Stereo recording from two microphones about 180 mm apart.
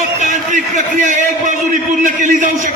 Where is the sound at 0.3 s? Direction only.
45° right (ahead or behind).